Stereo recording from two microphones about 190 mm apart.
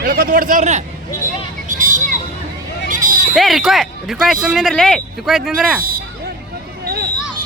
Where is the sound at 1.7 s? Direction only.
40° right (ahead or behind).